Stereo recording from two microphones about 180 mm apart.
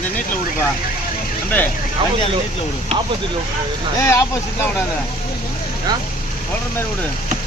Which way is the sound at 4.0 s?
15° left (ahead or behind).